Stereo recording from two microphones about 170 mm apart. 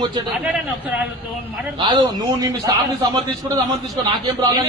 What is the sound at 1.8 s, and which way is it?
Speech, 25° right (ahead or behind).